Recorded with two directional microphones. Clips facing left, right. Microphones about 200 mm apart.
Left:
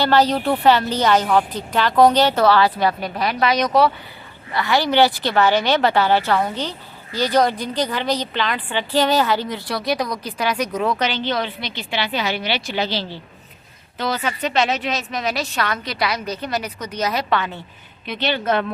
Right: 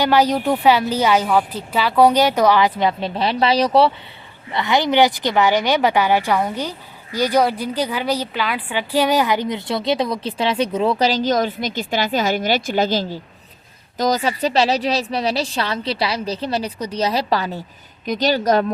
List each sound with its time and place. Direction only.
0.0 s a woman's voice: 10° right (ahead or behind); by 3.9 s 30° right (ahead or behind)
4.5 s a woman's voice: 20° right (ahead or behind); by 18.6 s 40° right (ahead or behind)